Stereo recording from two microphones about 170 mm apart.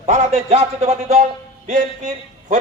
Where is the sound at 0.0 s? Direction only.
40° right (ahead or behind).